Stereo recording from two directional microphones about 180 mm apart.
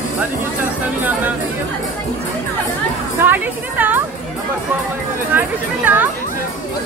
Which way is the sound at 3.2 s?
10° right (ahead or behind).